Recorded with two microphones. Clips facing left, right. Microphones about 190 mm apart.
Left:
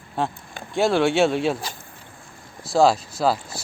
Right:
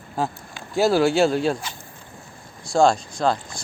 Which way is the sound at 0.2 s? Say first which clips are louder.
Even; centre (ahead or behind).